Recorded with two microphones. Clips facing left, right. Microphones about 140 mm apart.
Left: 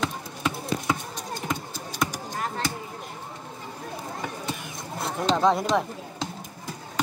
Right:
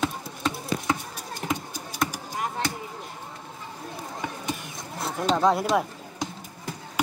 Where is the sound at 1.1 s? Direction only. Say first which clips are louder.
Even; 10° right (ahead or behind).